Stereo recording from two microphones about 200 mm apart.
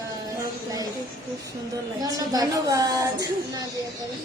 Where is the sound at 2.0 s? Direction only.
20° right (ahead or behind).